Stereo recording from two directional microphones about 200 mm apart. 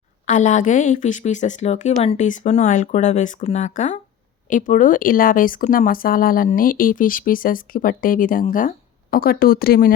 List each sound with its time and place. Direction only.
0.3 s a woman's voice: 40° left (ahead or behind)